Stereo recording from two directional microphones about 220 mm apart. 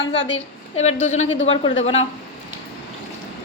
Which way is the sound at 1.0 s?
30° left (ahead or behind).